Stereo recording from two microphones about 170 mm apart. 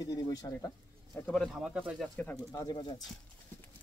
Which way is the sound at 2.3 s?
20° left (ahead or behind).